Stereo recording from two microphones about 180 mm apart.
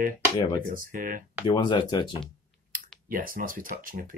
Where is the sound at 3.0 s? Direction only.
50° right (ahead or behind).